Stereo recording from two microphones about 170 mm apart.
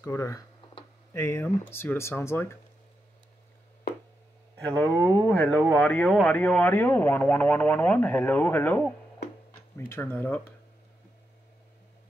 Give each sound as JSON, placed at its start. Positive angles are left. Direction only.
{"t": 0.0, "sound": "speech", "side_deg": 20}
{"t": 4.6, "sound": "speech", "side_deg": 10}
{"t": 4.8, "sound": "speech", "side_deg": -20}
{"t": 5.3, "sound": "speech", "side_deg": 10}